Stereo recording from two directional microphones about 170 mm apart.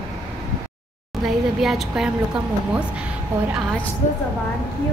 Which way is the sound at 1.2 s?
Centre (ahead or behind).